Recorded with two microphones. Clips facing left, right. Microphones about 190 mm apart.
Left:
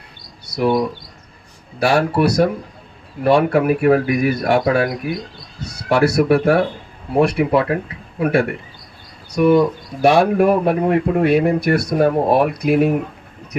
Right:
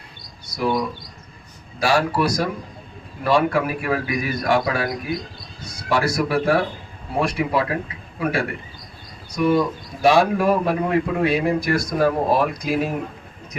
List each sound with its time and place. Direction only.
0.5 s speech: 55° left (ahead or behind)
1.8 s speech: 60° left (ahead or behind)